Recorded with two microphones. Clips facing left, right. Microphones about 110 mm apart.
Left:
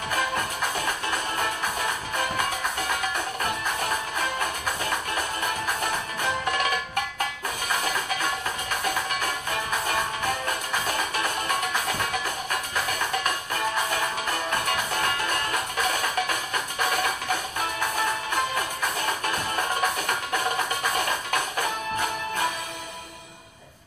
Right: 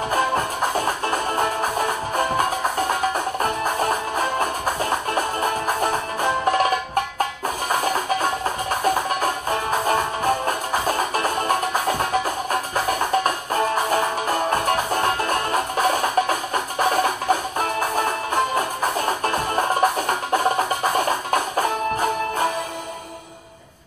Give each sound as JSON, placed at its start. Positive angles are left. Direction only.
{"t": 0.1, "sound": "music", "side_deg": -35}
{"t": 7.7, "sound": "music", "side_deg": -35}